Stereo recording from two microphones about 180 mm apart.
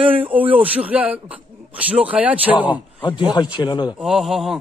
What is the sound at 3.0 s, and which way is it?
Speech, 25° left (ahead or behind).